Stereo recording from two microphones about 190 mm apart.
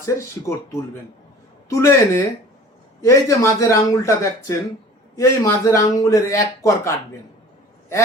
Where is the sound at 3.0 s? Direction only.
15° left (ahead or behind).